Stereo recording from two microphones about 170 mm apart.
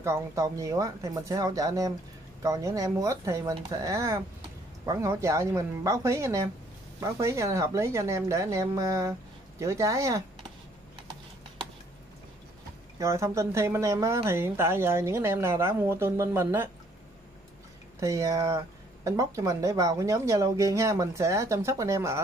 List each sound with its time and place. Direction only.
0.0 s a woman's voice: 15° right (ahead or behind)
13.0 s a woman's voice: 15° right (ahead or behind)
18.0 s a woman's voice: 20° right (ahead or behind)